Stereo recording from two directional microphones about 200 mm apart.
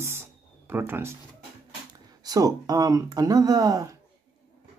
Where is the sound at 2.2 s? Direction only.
20° right (ahead or behind).